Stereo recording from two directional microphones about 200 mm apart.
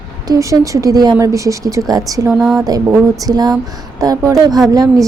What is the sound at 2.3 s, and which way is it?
Speech, centre (ahead or behind).